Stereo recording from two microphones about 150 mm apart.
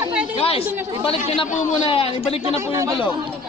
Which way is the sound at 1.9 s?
40° left (ahead or behind).